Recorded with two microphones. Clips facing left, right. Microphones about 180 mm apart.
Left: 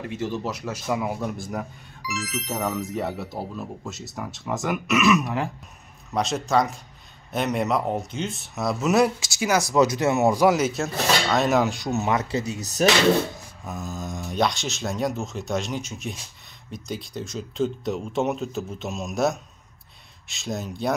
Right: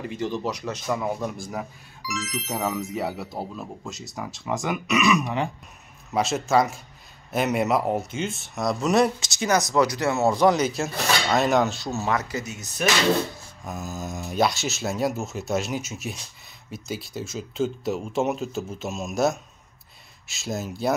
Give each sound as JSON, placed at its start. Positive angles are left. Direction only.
{"t": 0.0, "sound": "speech", "side_deg": 0}
{"t": 9.8, "sound": "speech", "side_deg": 20}
{"t": 11.7, "sound": "speech", "side_deg": 20}
{"t": 13.7, "sound": "speech", "side_deg": -5}